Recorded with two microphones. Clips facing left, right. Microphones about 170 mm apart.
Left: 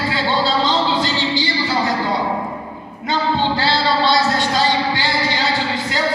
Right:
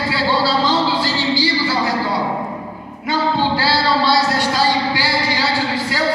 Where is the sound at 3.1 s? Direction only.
20° left (ahead or behind).